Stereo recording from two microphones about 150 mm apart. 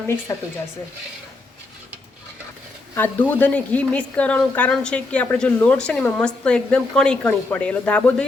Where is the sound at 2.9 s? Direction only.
10° left (ahead or behind).